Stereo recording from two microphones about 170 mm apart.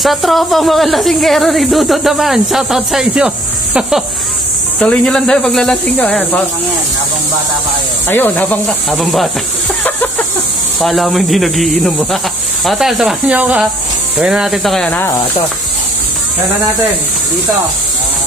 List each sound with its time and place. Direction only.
0.0 s speech: centre (ahead or behind)
8.1 s speech: 10° left (ahead or behind)
9.8 s a sound: 10° left (ahead or behind)
10.8 s speech: centre (ahead or behind)
14.9 s speech: 15° left (ahead or behind)